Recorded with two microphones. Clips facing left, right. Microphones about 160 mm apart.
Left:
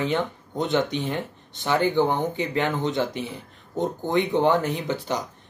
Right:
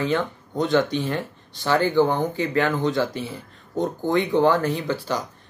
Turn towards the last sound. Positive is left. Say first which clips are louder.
# right 2 dB
turn(degrees=20)  # may be behind; listen again after turning